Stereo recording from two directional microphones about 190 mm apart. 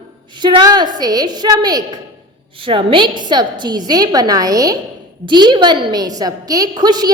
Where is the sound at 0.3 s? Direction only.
20° right (ahead or behind).